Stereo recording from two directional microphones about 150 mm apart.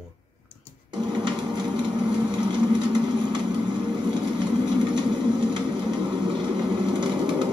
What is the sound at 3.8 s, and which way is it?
Vehicle, 30° right (ahead or behind).